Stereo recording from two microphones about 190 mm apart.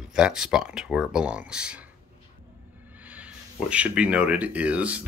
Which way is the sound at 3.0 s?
5° right (ahead or behind).